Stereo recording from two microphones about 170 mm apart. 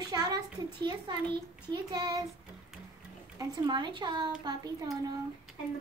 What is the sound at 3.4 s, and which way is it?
Speech, 25° right (ahead or behind).